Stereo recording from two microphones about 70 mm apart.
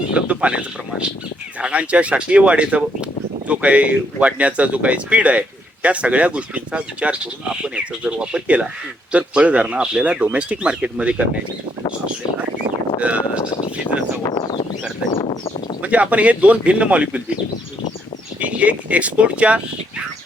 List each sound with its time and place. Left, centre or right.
0.1 s a man's voice: centre
13.0 s speech: centre
15.8 s a man's voice: centre
18.3 s speech: centre